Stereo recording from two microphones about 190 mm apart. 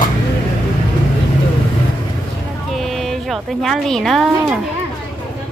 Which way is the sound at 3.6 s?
Centre (ahead or behind).